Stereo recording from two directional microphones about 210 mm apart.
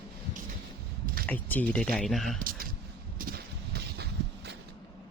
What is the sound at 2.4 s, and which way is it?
Speech, 45° right (ahead or behind).